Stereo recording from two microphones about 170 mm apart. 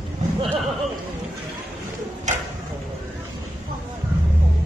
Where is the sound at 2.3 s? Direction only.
45° right (ahead or behind).